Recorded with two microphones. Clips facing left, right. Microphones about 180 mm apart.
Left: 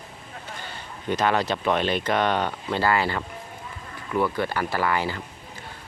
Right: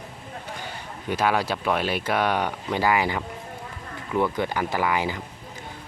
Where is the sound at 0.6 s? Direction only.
10° right (ahead or behind).